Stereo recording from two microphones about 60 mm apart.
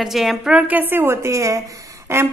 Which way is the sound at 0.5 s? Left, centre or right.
Right.